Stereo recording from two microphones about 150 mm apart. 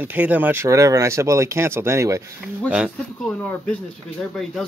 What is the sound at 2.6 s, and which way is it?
Speech, 5° right (ahead or behind).